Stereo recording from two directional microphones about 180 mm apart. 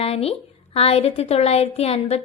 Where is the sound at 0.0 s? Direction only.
35° left (ahead or behind).